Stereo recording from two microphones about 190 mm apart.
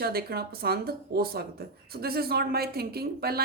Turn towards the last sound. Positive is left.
turn(degrees=-55)  # may be behind; listen again after turning